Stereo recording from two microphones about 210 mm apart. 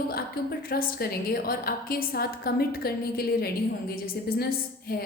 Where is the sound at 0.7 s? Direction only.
45° left (ahead or behind).